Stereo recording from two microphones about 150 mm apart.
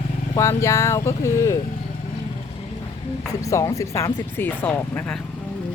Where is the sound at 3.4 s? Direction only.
20° left (ahead or behind).